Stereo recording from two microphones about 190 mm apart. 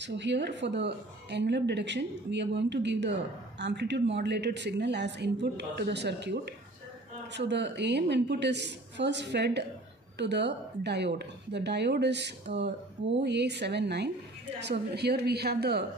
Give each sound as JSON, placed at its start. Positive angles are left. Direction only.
{"t": 0.0, "sound": "a woman's voice", "side_deg": -65}